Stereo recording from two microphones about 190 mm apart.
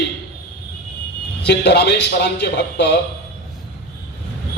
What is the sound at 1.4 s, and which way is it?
Speech, 60° left (ahead or behind).